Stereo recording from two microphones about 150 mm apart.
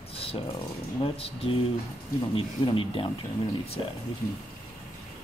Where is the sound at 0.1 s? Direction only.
40° left (ahead or behind).